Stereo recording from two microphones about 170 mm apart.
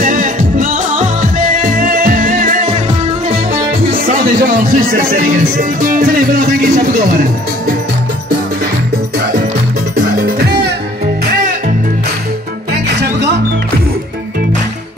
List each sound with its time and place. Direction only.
0.0 s music: 50° right (ahead or behind)
3.9 s speech: 55° right (ahead or behind)